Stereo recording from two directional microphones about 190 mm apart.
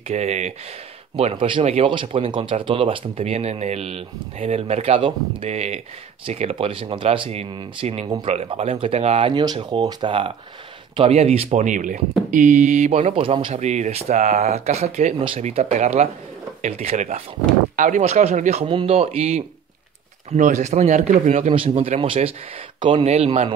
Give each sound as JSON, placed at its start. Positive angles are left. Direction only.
{"t": 0.1, "sound": "speech", "side_deg": -35}